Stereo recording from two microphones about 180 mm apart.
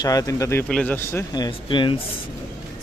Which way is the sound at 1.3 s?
25° left (ahead or behind).